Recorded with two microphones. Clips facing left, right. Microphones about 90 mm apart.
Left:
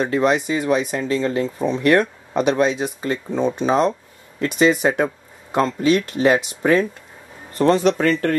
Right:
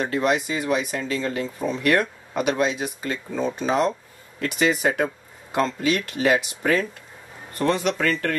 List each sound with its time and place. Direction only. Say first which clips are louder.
0.0 s speech: left 4 dB; 25° left (ahead or behind)
6.1 s speech: left 4 dB; 35° left (ahead or behind)
6.6 s speech: left 5 dB; 20° left (ahead or behind)
7.6 s speech: left 6 dB; 35° left (ahead or behind)